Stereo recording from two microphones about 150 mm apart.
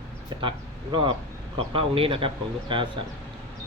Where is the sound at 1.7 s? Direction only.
35° right (ahead or behind).